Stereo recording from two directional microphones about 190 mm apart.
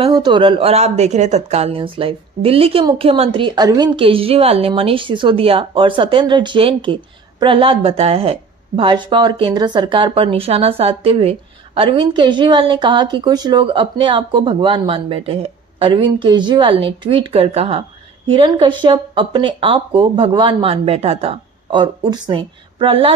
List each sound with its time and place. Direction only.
0.0 s a woman's voice: 25° right (ahead or behind)